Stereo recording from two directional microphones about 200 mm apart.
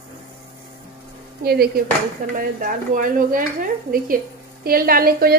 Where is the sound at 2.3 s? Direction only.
40° right (ahead or behind).